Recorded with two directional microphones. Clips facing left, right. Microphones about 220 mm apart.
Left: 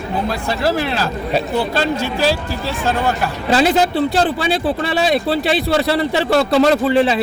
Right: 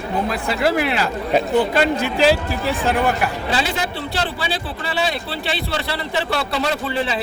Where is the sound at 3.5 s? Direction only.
45° left (ahead or behind).